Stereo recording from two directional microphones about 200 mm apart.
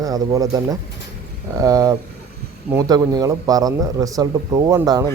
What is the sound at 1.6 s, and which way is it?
A man's voice, 20° right (ahead or behind).